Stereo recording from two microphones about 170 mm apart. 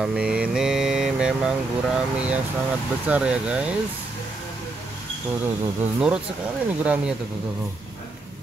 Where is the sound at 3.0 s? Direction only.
5° right (ahead or behind).